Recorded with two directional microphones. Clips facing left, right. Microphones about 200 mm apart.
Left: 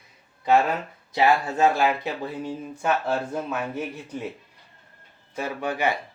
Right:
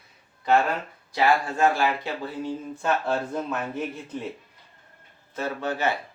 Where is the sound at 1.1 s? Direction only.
20° left (ahead or behind).